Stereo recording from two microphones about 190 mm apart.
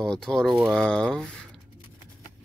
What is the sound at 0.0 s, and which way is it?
Speech, 5° left (ahead or behind).